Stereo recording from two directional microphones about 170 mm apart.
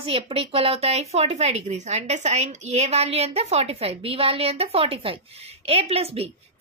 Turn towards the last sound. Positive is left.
turn(degrees=-35)  # may be behind; listen again after turning